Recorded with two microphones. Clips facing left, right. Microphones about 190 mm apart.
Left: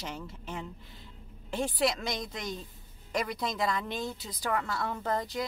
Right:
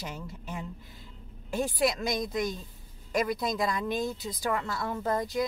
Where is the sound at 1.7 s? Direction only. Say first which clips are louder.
Right 3 dB; 20° right (ahead or behind).